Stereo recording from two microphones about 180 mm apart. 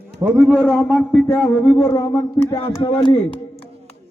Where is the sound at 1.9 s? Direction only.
20° left (ahead or behind).